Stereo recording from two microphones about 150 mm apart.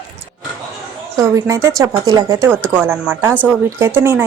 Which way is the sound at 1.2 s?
20° right (ahead or behind).